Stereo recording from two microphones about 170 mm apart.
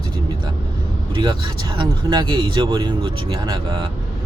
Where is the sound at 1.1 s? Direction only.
25° right (ahead or behind).